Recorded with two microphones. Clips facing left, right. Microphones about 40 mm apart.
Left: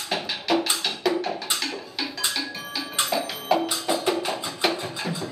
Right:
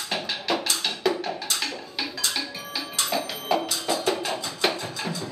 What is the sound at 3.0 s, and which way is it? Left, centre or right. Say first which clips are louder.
Music: left 2 dB; centre.